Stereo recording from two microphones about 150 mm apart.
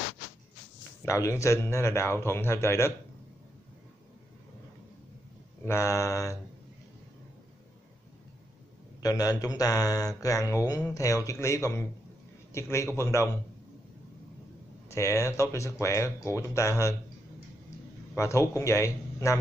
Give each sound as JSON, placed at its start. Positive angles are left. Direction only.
{"t": 1.0, "sound": "a man's voice", "side_deg": 20}
{"t": 5.7, "sound": "speech", "side_deg": 20}
{"t": 9.0, "sound": "speech", "side_deg": 25}
{"t": 14.9, "sound": "speech", "side_deg": 20}
{"t": 18.1, "sound": "a man's voice", "side_deg": 20}